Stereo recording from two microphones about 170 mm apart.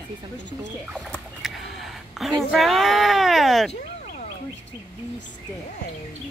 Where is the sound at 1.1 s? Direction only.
Centre (ahead or behind).